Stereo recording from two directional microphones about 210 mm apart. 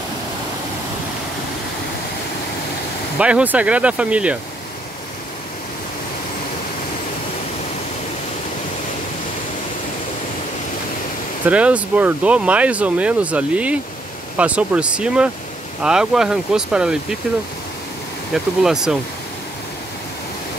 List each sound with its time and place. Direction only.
3.2 s speech: 5° right (ahead or behind)
11.4 s speech: 5° right (ahead or behind)
18.3 s speech: centre (ahead or behind)